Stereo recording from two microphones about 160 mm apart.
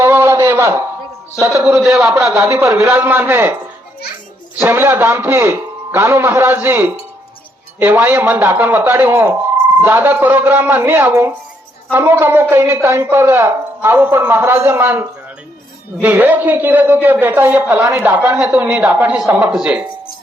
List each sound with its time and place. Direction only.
0.0 s a sound: 15° right (ahead or behind)
1.5 s a man's voice: 5° right (ahead or behind)
2.5 s a man's voice: 20° right (ahead or behind)
4.6 s a man's voice: 15° right (ahead or behind)